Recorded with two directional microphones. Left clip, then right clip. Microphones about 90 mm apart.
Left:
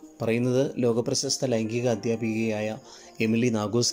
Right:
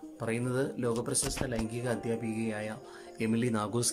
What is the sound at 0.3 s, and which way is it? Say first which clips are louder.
Speech: left 8 dB; 30° left (ahead or behind).